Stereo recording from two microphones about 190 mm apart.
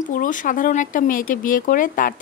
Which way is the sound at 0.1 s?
45° left (ahead or behind).